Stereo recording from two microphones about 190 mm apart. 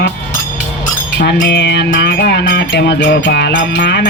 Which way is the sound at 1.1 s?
70° left (ahead or behind).